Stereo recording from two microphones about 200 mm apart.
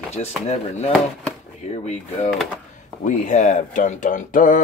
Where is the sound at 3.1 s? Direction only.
35° left (ahead or behind).